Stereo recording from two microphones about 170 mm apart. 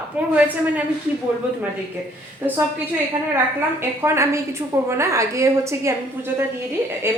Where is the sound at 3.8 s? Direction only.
15° right (ahead or behind).